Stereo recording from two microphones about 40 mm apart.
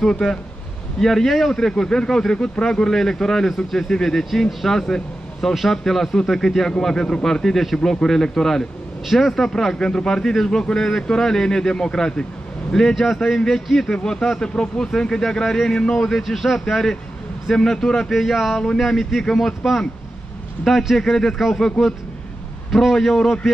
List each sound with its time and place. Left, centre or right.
0.1 s speech: centre
4.7 s speech: centre
9.0 s speech: centre
9.3 s speech: centre
12.9 s speech: centre
14.4 s speech: centre
18.1 s speech: centre
20.9 s speech: centre